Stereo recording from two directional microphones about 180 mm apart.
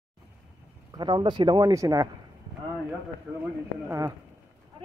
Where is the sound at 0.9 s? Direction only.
25° right (ahead or behind).